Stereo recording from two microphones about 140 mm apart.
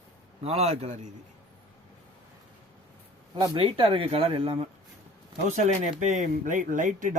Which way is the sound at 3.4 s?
40° right (ahead or behind).